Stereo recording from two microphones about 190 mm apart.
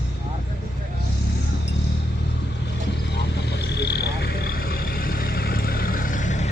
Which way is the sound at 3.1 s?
60° left (ahead or behind).